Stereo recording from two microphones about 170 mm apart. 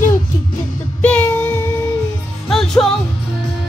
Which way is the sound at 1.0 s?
10° left (ahead or behind).